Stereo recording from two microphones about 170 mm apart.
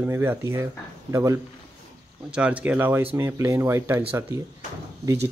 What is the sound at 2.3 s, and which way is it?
Speech, 10° right (ahead or behind).